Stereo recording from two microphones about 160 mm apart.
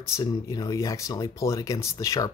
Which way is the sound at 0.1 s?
20° left (ahead or behind).